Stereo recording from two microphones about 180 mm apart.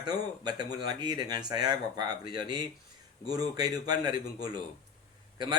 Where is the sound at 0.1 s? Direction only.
20° right (ahead or behind).